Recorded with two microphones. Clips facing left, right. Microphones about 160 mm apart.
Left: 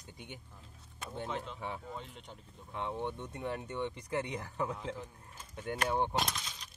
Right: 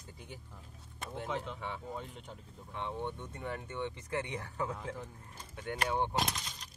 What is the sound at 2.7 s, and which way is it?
Speech, 15° left (ahead or behind).